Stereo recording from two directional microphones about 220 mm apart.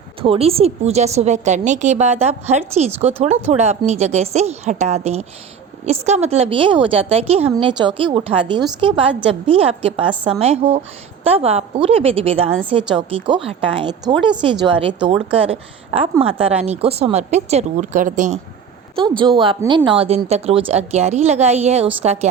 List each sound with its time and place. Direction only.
0.2 s a woman's voice: 25° right (ahead or behind)
19.4 s a woman's voice: 20° right (ahead or behind)